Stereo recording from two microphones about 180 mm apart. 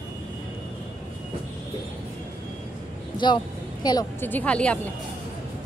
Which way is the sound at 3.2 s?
25° left (ahead or behind).